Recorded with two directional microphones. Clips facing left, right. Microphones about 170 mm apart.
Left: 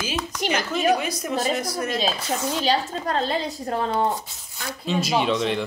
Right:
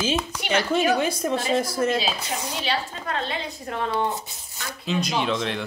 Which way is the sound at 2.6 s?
35° left (ahead or behind).